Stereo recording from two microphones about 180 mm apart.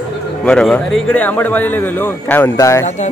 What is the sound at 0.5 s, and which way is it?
Speech, 5° left (ahead or behind).